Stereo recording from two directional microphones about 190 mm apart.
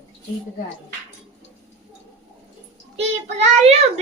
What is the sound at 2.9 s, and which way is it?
Child singing, 35° right (ahead or behind).